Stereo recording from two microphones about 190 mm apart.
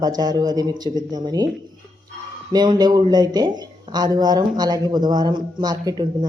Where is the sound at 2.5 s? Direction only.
20° right (ahead or behind).